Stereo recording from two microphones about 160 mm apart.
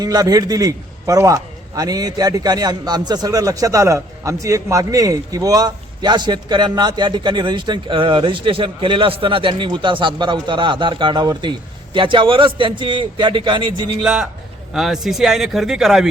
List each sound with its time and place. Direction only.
0.0 s a man's voice: 25° right (ahead or behind)
14.0 s speech: 5° right (ahead or behind)